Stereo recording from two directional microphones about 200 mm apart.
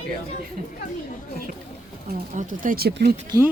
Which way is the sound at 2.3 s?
40° right (ahead or behind).